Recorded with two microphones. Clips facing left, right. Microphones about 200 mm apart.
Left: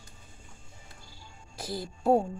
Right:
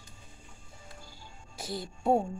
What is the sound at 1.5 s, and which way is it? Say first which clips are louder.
Speech: left 2 dB; centre (ahead or behind).